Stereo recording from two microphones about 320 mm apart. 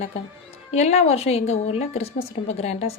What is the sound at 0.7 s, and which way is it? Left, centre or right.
A woman's voice, centre.